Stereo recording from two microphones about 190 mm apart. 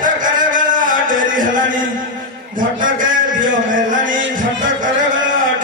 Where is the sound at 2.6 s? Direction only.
45° right (ahead or behind).